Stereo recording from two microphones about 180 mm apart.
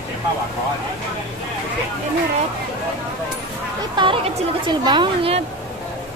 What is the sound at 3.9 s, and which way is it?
A woman's voice, 25° right (ahead or behind).